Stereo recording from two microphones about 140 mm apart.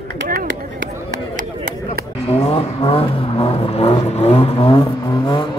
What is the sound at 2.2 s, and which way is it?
Vehicle, 40° left (ahead or behind).